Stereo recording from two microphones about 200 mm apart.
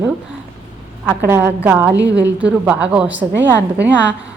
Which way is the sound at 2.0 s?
60° right (ahead or behind).